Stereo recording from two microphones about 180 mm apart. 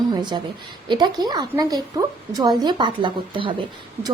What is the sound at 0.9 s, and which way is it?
A woman's voice, 25° right (ahead or behind).